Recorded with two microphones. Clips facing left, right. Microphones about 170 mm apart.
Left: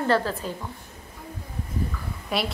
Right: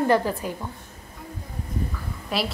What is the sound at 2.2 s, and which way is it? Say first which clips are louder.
Speech: even; centre (ahead or behind).